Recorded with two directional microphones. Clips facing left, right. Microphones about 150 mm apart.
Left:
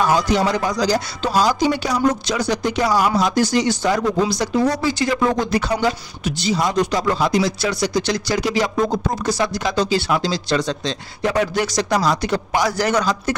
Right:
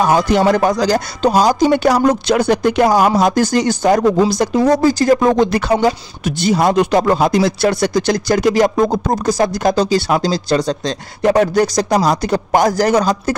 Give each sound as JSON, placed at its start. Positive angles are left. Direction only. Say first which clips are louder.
{"t": 0.5, "sound": "speech", "louder": "right 6 dB", "side_deg": -55}
{"t": 1.9, "sound": "speech", "louder": "right 6 dB", "side_deg": -65}
{"t": 5.4, "sound": "speech", "louder": "right 6 dB", "side_deg": -60}